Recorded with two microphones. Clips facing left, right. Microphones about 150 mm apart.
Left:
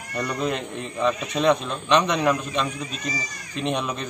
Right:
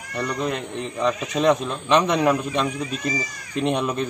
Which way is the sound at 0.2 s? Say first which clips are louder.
Right 1 dB; 5° left (ahead or behind).